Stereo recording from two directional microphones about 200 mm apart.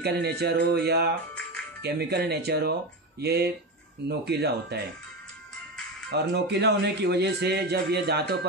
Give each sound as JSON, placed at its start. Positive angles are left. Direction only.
{"t": 0.0, "sound": "a man's voice", "side_deg": -55}
{"t": 6.0, "sound": "a man's voice", "side_deg": -55}